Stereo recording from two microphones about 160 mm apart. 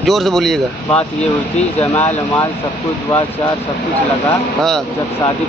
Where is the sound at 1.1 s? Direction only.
40° left (ahead or behind).